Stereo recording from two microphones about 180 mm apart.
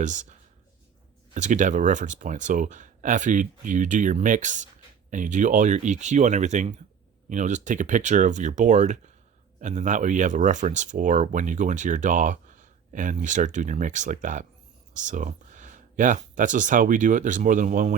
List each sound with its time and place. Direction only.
0.0 s speech: 45° right (ahead or behind)